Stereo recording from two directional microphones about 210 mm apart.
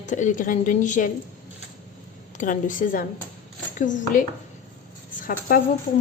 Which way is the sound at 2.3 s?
35° left (ahead or behind).